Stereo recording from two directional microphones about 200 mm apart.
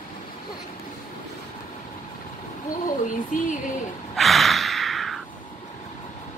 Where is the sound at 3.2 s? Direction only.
40° left (ahead or behind).